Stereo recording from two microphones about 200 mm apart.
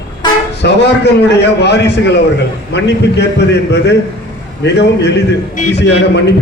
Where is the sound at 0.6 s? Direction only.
60° left (ahead or behind).